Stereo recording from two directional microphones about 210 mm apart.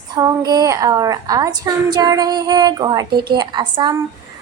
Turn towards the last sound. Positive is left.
turn(degrees=-20)  # may be behind; listen again after turning